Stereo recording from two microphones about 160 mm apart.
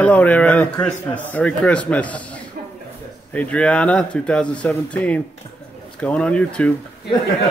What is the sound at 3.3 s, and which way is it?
Speech, 10° left (ahead or behind).